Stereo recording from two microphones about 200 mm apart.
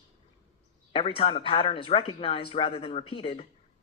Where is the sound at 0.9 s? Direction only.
25° left (ahead or behind).